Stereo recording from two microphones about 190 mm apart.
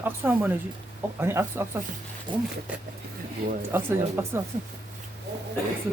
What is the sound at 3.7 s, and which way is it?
Speech, 10° right (ahead or behind).